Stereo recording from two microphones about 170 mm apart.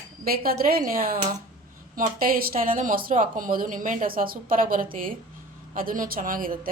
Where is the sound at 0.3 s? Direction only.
60° right (ahead or behind).